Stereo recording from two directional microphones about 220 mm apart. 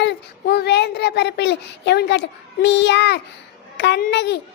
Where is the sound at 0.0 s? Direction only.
50° left (ahead or behind).